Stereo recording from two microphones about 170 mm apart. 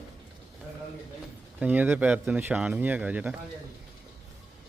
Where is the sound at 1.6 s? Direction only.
10° right (ahead or behind).